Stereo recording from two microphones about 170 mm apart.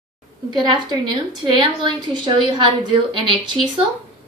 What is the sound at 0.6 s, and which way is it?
A woman's voice, 20° right (ahead or behind).